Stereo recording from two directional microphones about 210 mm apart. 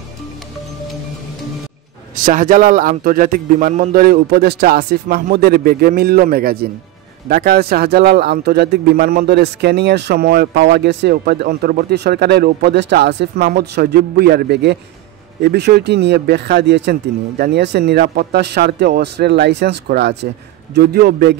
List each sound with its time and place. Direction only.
2.2 s speech: 40° right (ahead or behind)